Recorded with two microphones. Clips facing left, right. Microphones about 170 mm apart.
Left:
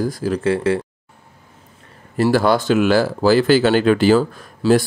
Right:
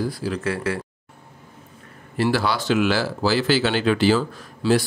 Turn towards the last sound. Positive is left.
turn(degrees=45)  # may be behind; listen again after turning